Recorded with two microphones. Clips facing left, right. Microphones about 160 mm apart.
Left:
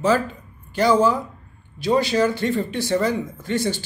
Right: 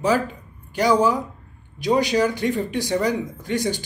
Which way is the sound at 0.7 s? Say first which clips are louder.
Left 1 dB; 15° right (ahead or behind).